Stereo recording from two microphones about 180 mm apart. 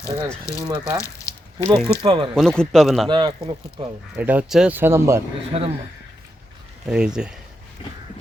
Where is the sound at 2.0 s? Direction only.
30° right (ahead or behind).